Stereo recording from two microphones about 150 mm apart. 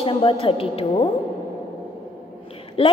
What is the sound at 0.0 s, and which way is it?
A woman's voice, 35° left (ahead or behind).